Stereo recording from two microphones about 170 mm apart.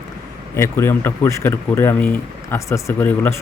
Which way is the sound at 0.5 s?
15° left (ahead or behind).